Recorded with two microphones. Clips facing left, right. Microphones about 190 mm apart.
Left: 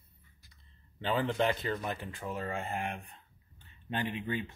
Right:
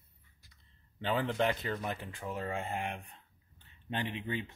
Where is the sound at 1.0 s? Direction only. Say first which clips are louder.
Left 1 dB; 15° right (ahead or behind).